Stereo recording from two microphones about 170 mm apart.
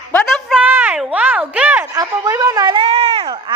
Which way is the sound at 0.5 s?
10° right (ahead or behind).